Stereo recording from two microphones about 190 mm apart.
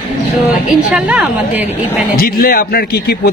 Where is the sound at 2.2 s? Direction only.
50° left (ahead or behind).